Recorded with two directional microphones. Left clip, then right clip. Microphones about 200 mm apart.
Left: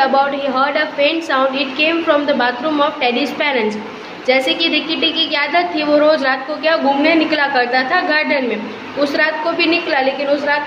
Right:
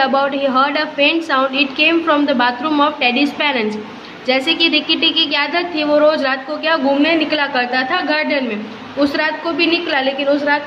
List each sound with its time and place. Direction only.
0.0 s a woman's voice: 20° right (ahead or behind)